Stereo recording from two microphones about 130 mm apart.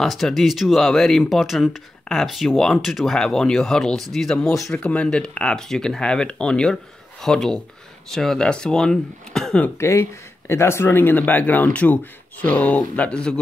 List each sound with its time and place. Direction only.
0.0 s speech: centre (ahead or behind)
9.8 s speech: 20° left (ahead or behind)